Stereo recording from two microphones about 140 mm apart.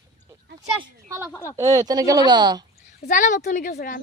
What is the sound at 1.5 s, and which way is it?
Speech, 25° right (ahead or behind).